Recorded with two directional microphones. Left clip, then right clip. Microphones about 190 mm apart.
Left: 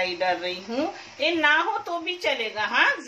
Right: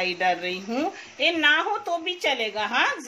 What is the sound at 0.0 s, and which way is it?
Speech, 55° right (ahead or behind).